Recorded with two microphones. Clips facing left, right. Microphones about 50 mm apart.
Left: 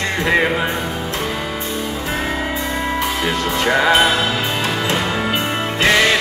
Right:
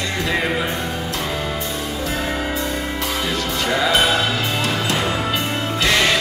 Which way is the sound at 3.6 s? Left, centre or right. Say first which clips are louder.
Left 5 dB; left.